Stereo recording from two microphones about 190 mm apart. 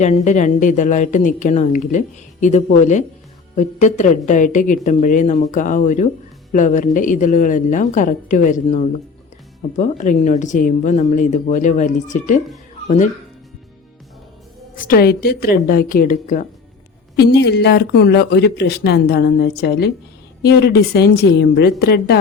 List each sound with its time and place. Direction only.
0.0 s speech: 40° left (ahead or behind)
14.8 s a woman's voice: 50° left (ahead or behind)
17.2 s speech: 60° left (ahead or behind)